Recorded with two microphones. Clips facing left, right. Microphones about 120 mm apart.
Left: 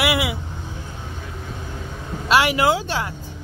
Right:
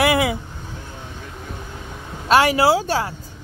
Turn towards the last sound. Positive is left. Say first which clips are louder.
# right 3 dB
turn(degrees=-40)  # may be behind; listen again after turning